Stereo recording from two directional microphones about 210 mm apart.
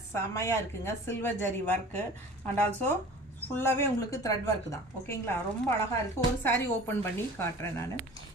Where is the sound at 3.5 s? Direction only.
10° left (ahead or behind).